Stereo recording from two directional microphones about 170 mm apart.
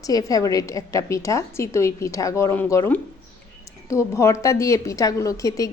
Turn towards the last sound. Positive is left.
turn(degrees=20)  # may be behind; listen again after turning